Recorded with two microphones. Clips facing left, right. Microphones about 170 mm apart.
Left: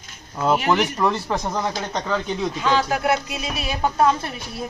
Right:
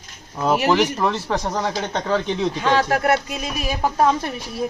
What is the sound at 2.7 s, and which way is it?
Speech, 55° right (ahead or behind).